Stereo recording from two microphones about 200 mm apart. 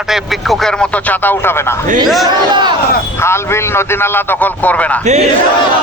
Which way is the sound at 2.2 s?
20° right (ahead or behind).